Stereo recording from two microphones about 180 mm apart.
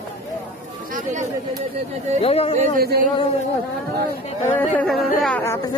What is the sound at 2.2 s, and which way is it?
Speech, 35° left (ahead or behind).